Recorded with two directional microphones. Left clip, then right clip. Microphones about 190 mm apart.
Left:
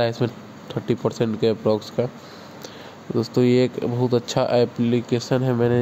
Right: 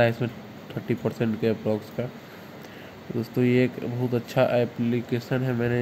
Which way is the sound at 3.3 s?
15° left (ahead or behind).